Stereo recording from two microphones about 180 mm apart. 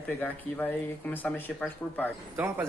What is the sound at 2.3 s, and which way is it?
Speech, 10° right (ahead or behind).